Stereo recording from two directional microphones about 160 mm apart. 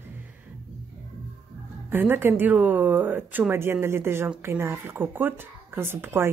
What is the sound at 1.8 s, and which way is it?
Speech, 15° right (ahead or behind).